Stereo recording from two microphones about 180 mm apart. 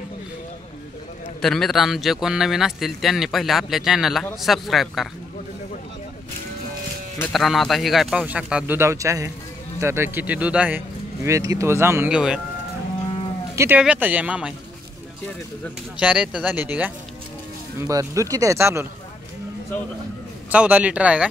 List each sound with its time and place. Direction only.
1.4 s a man's voice: centre (ahead or behind)
7.3 s a man's voice: centre (ahead or behind)
13.6 s speech: 10° right (ahead or behind)
16.0 s speech: 5° right (ahead or behind)
20.4 s speech: 10° right (ahead or behind)